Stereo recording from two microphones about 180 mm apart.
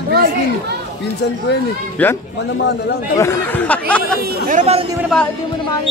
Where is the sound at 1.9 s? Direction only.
10° left (ahead or behind).